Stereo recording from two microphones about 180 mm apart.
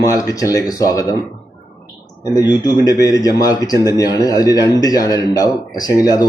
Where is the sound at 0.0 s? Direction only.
20° left (ahead or behind).